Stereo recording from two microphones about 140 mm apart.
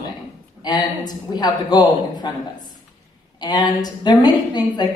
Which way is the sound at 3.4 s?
30° left (ahead or behind).